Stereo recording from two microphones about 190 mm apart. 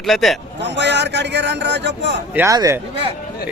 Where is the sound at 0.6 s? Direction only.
65° right (ahead or behind).